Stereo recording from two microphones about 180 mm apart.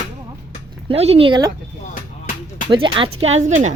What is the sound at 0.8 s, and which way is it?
Speech, 35° right (ahead or behind).